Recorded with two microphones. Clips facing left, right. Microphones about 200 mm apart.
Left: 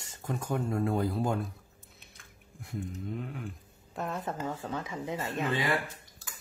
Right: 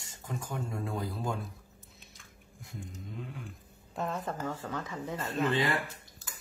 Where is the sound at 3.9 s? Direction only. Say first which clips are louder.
Even; 5° left (ahead or behind).